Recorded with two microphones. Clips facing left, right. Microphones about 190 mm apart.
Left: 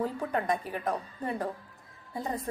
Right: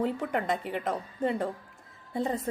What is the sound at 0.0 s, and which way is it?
Speech, 20° right (ahead or behind).